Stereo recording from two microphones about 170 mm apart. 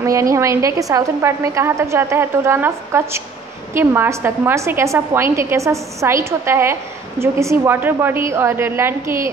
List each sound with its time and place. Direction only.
0.0 s a woman's voice: 20° right (ahead or behind)